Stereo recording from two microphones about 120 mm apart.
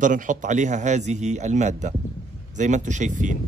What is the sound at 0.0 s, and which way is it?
A man's voice, 90° right.